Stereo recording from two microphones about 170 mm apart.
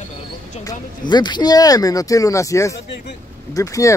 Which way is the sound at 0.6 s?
25° left (ahead or behind).